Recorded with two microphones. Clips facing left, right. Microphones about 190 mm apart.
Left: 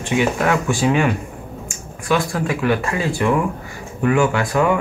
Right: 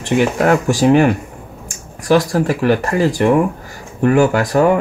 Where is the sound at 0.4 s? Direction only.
40° right (ahead or behind).